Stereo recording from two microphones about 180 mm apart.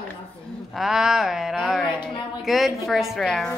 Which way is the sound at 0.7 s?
Centre (ahead or behind).